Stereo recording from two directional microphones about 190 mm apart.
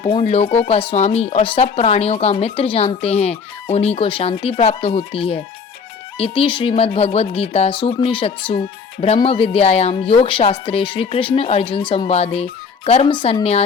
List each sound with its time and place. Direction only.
0.0 s speech: 30° left (ahead or behind)